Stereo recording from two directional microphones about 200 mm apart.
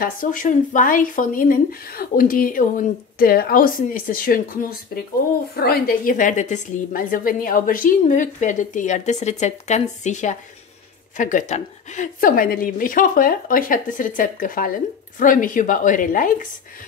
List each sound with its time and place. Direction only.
0.0 s a woman's voice: 45° left (ahead or behind)